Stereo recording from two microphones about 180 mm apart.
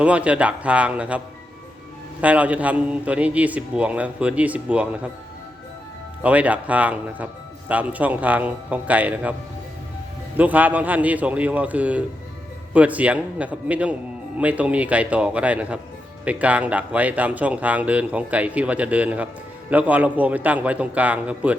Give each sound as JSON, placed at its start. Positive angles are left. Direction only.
{"t": 0.0, "sound": "speech", "side_deg": -5}
{"t": 2.2, "sound": "speech", "side_deg": -10}
{"t": 6.2, "sound": "speech", "side_deg": -10}
{"t": 10.3, "sound": "speech", "side_deg": -10}